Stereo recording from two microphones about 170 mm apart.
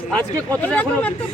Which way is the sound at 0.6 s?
10° left (ahead or behind).